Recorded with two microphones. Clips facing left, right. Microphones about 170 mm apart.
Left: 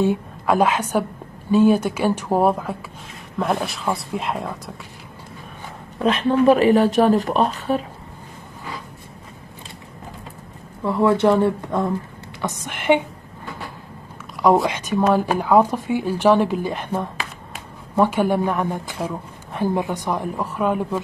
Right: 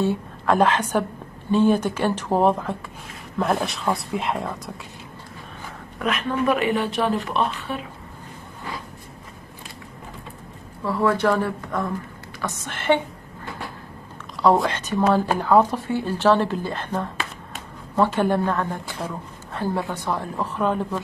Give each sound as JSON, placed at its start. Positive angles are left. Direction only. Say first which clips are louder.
{"t": 0.0, "sound": "a woman's voice", "louder": "left 3 dB", "side_deg": 10}
{"t": 5.9, "sound": "speech", "louder": "left 6 dB", "side_deg": 30}
{"t": 10.8, "sound": "a woman's voice", "louder": "left 4 dB", "side_deg": 20}
{"t": 14.6, "sound": "a woman's voice", "louder": "left 2 dB", "side_deg": 10}